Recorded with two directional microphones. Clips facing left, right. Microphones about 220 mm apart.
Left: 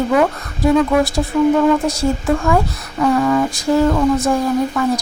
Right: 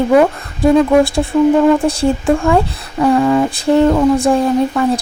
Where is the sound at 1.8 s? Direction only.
30° right (ahead or behind).